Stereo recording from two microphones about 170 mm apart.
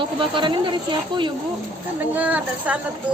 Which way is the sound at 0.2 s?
30° right (ahead or behind).